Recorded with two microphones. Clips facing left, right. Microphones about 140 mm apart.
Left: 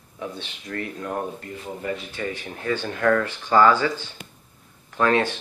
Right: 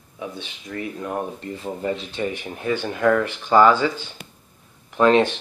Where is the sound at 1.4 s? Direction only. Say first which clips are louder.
Right 4 dB; 25° right (ahead or behind).